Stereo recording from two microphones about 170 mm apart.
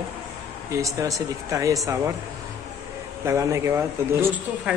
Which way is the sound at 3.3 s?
20° right (ahead or behind).